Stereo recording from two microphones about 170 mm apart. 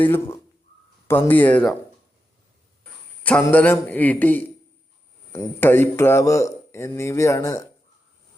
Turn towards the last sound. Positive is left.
turn(degrees=15)  # may be behind; listen again after turning